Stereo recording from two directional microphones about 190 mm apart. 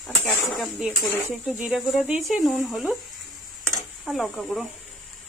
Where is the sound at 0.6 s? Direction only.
5° right (ahead or behind).